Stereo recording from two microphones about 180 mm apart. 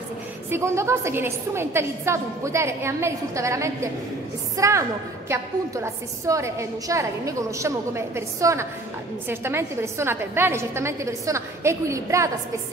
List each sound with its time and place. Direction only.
0.5 s a woman's voice: 15° right (ahead or behind)